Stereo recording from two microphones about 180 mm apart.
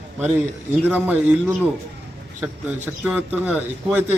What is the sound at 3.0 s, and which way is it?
Speech, 10° right (ahead or behind).